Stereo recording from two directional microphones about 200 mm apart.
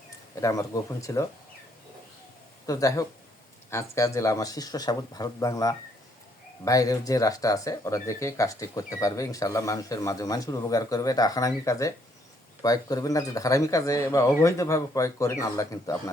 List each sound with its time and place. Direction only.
0.3 s speech: 15° left (ahead or behind)
2.6 s speech: 15° left (ahead or behind)